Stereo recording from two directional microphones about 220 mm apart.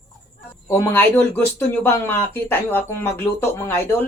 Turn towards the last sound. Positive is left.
turn(degrees=10)  # may be behind; listen again after turning